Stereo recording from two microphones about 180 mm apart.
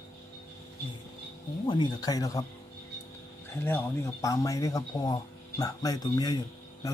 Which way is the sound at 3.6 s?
15° left (ahead or behind).